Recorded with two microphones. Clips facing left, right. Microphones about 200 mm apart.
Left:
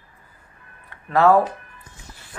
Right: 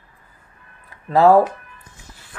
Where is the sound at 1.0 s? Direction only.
30° right (ahead or behind).